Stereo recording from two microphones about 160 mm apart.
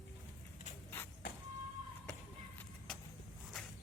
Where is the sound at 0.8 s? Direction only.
15° left (ahead or behind).